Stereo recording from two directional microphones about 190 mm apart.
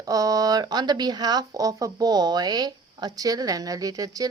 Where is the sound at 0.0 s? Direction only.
20° right (ahead or behind).